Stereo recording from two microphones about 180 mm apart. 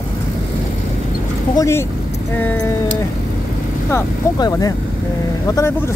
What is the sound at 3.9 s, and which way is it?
Speech, 20° left (ahead or behind).